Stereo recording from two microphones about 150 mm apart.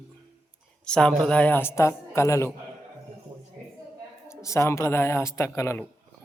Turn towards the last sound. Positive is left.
turn(degrees=20)  # may be behind; listen again after turning